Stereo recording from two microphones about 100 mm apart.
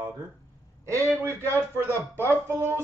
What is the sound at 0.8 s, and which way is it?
Speech, 25° right (ahead or behind).